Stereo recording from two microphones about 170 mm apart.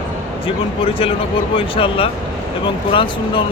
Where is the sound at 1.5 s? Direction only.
30° left (ahead or behind).